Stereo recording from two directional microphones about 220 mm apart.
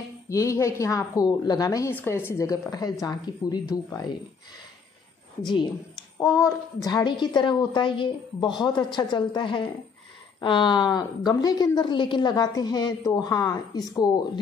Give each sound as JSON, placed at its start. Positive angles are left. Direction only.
{"t": 0.3, "sound": "a woman's voice", "side_deg": 15}
{"t": 6.4, "sound": "a woman's voice", "side_deg": 15}